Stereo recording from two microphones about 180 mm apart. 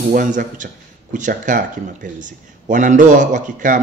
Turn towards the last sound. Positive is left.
turn(degrees=-45)  # may be behind; listen again after turning